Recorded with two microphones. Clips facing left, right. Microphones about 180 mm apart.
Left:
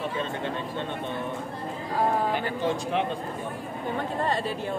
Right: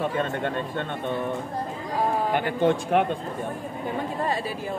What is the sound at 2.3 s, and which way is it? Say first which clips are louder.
Speech: right 5 dB; 55° right (ahead or behind).